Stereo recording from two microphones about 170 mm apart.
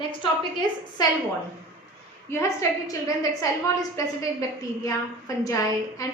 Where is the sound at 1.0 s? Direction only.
25° left (ahead or behind).